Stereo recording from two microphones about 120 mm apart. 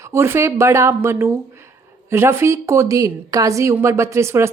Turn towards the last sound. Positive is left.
turn(degrees=-20)  # may be behind; listen again after turning